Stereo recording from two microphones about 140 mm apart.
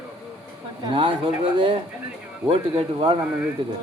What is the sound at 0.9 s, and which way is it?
Speech, 40° right (ahead or behind).